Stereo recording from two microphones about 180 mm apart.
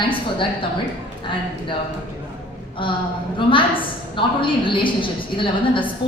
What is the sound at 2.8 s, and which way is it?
A woman's voice, 30° left (ahead or behind).